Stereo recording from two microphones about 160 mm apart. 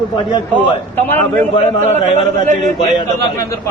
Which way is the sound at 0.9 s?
10° left (ahead or behind).